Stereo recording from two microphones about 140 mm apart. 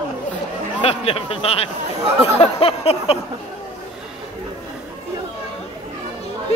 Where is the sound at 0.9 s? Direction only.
45° left (ahead or behind).